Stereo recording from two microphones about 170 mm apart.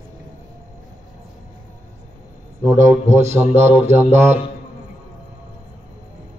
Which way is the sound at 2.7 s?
45° right (ahead or behind).